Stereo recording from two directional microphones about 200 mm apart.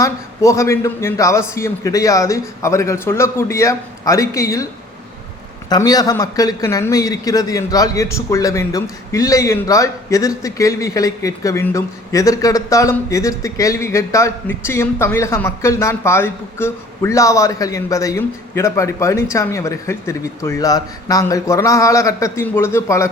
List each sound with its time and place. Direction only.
0.0 s a man's voice: 15° left (ahead or behind)
5.6 s a man's voice: 20° left (ahead or behind)